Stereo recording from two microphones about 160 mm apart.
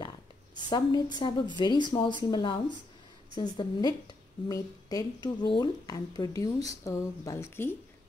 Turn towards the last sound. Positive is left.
turn(degrees=20)  # may be behind; listen again after turning